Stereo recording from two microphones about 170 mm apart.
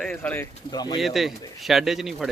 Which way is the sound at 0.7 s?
25° left (ahead or behind).